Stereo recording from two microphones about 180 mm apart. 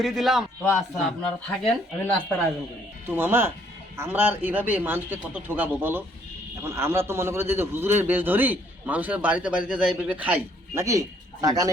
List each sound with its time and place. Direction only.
0.0 s speech: centre (ahead or behind)
3.1 s a man's voice: 10° right (ahead or behind)